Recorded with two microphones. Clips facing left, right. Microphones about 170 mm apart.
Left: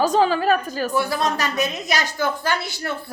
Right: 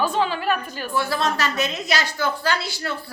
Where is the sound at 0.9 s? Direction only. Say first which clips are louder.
Even; 15° left (ahead or behind).